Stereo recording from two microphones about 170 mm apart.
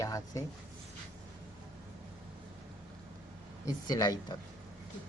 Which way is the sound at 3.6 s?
20° left (ahead or behind).